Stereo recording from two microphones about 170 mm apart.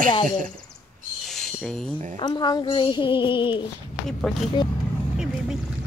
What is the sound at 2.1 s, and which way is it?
Speech, 25° left (ahead or behind).